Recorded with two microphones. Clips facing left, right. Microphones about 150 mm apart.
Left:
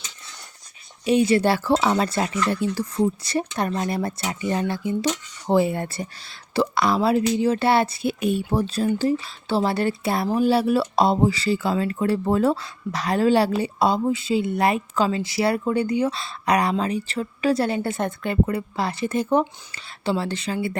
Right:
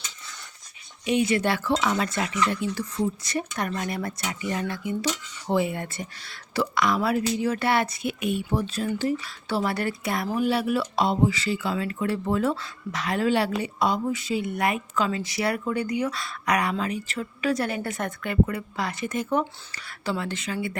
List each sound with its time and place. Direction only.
1.0 s speech: 35° left (ahead or behind)